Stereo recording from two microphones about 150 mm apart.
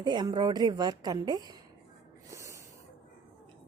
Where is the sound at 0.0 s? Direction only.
30° right (ahead or behind).